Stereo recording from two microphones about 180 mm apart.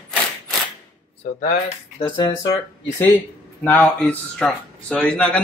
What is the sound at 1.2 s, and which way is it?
Speech, 40° left (ahead or behind).